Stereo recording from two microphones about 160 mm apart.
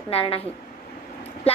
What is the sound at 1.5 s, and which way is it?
Speech, 40° left (ahead or behind).